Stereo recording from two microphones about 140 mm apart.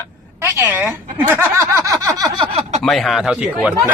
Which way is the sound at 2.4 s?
45° right (ahead or behind).